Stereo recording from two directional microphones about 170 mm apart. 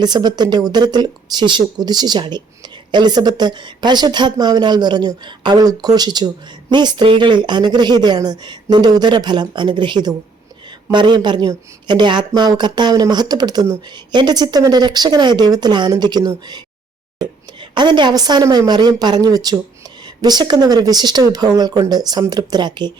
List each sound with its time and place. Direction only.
0.0 s a woman's voice: 25° right (ahead or behind)
17.7 s a woman's voice: 25° right (ahead or behind)